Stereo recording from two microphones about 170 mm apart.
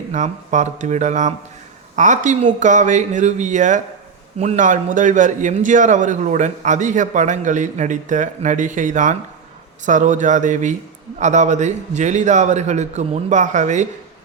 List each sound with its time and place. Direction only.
0.1 s a man's voice: 45° right (ahead or behind)